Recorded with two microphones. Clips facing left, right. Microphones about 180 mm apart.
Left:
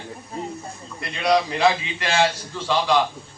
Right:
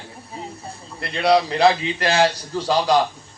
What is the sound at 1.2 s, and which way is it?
A man's voice, 35° right (ahead or behind).